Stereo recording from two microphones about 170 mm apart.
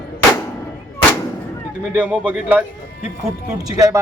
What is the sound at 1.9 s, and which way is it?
Speech, 10° right (ahead or behind).